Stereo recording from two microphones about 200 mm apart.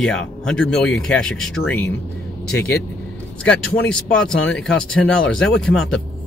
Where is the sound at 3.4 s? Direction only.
5° left (ahead or behind).